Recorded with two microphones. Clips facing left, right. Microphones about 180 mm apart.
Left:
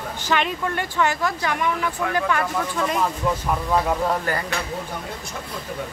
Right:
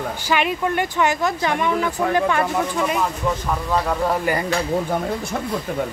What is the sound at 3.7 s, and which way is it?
Speech, 5° left (ahead or behind).